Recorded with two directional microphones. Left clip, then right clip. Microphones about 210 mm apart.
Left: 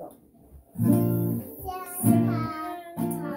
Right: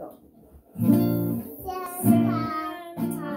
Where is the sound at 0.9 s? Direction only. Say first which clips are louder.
Right 3 dB; 35° left (ahead or behind).